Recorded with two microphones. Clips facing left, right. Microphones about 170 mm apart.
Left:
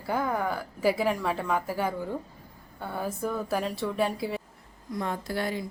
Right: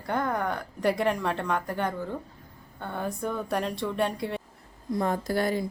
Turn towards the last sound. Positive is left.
turn(degrees=-45)  # may be behind; listen again after turning